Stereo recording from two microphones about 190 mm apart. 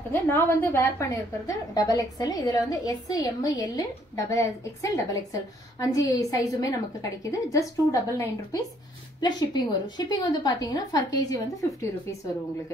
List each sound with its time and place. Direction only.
0.1 s a woman's voice: 10° left (ahead or behind)